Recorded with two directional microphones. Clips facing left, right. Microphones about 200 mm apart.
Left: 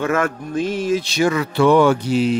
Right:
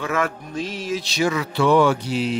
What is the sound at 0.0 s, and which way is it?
Speech, 50° left (ahead or behind).